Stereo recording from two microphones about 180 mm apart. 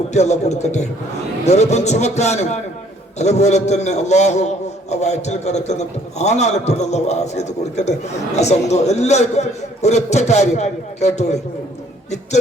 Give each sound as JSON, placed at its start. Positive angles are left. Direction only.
{"t": 0.1, "sound": "a man's voice", "side_deg": 40}